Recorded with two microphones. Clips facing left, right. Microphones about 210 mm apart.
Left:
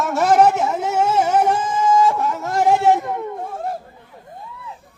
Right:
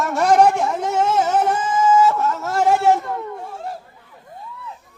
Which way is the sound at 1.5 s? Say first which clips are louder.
Right 1 dB; 10° right (ahead or behind).